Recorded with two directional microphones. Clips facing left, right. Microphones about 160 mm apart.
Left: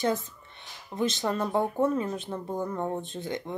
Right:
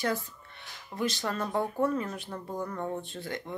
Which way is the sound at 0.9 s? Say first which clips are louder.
Left 4 dB; 20° left (ahead or behind).